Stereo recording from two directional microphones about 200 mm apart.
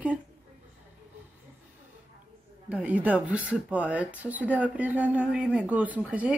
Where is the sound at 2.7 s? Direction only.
5° right (ahead or behind).